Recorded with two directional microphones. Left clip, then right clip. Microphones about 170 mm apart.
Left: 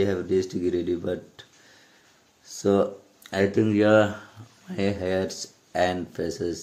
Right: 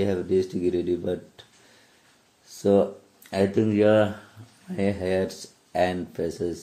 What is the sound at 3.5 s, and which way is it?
Speech, centre (ahead or behind).